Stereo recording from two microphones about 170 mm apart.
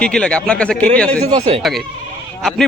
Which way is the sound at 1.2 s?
35° right (ahead or behind).